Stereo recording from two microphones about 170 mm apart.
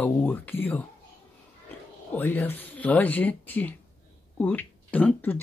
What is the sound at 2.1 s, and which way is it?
Speech, 10° left (ahead or behind).